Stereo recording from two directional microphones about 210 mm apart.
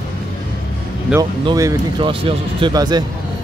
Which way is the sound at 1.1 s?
15° right (ahead or behind).